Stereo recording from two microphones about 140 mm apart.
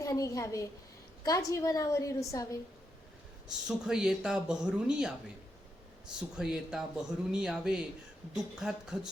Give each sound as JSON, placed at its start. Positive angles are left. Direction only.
{"t": 0.0, "sound": "a woman's voice", "side_deg": 25}
{"t": 3.7, "sound": "speech", "side_deg": -5}